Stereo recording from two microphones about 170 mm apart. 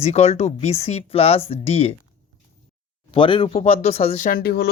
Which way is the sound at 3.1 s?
30° left (ahead or behind).